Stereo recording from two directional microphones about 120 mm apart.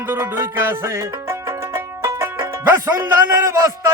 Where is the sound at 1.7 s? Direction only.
25° right (ahead or behind).